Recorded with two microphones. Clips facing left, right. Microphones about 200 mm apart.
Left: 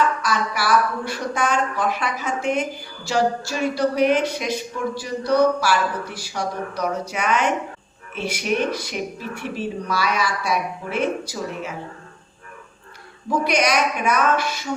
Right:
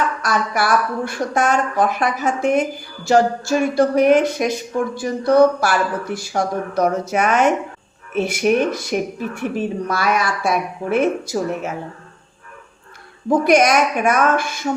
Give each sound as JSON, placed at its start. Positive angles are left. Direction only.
{"t": 0.3, "sound": "speech", "side_deg": -50}
{"t": 13.2, "sound": "speech", "side_deg": -50}